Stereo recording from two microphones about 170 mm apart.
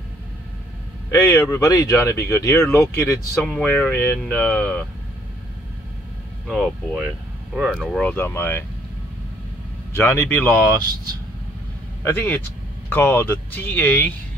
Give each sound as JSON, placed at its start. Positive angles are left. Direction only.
{"t": 1.1, "sound": "speech", "side_deg": 15}
{"t": 6.4, "sound": "speech", "side_deg": 0}
{"t": 9.9, "sound": "speech", "side_deg": 15}
{"t": 12.0, "sound": "speech", "side_deg": 10}